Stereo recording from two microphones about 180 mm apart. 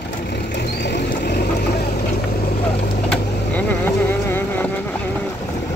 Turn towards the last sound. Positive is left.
turn(degrees=10)  # may be behind; listen again after turning